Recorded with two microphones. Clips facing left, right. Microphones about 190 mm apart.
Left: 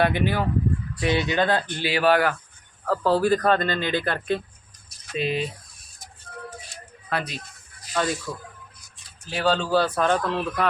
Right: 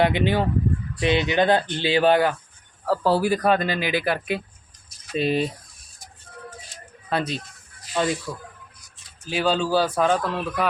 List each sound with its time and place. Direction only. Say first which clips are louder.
0.0 s speech: right 2 dB; 20° right (ahead or behind)
2.8 s speech: even; 10° right (ahead or behind)
5.1 s speech: right 4 dB; 40° right (ahead or behind)
7.1 s speech: right 4 dB; 25° right (ahead or behind)
9.3 s speech: right 1 dB; 10° right (ahead or behind)